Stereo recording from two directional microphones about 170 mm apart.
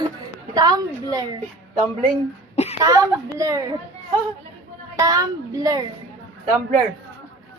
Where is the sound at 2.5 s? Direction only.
40° left (ahead or behind).